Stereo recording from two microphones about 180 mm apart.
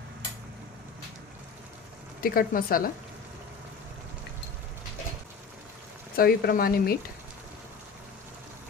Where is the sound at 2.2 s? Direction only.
55° left (ahead or behind).